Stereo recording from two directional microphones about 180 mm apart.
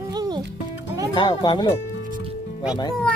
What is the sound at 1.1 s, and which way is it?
Speech, 25° left (ahead or behind).